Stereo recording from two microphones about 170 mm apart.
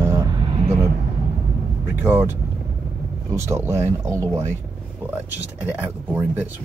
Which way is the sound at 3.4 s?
15° right (ahead or behind).